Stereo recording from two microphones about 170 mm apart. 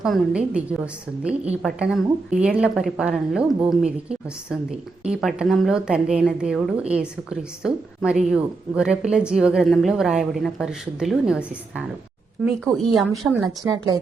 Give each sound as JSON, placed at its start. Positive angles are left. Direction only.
{"t": 0.0, "sound": "a woman's voice", "side_deg": -5}
{"t": 13.6, "sound": "speech", "side_deg": -25}